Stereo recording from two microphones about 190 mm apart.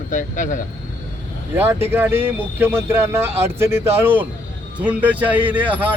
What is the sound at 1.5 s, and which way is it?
A man's voice, 10° right (ahead or behind).